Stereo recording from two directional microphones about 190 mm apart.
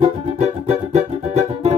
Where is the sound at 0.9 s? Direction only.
35° right (ahead or behind).